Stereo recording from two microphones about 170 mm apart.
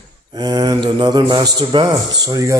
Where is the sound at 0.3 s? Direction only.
25° right (ahead or behind).